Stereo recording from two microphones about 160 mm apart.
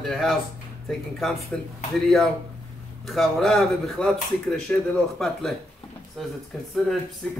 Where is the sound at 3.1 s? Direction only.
Centre (ahead or behind).